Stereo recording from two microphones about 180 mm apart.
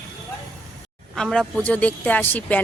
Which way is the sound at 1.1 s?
5° left (ahead or behind).